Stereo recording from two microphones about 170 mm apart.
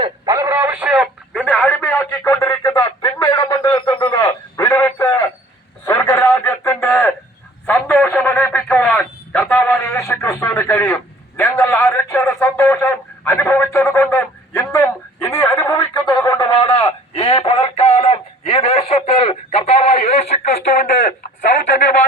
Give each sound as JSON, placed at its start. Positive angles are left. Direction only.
{"t": 0.0, "sound": "radio", "side_deg": -20}
{"t": 5.8, "sound": "a sound", "side_deg": 20}
{"t": 16.6, "sound": "radio", "side_deg": 35}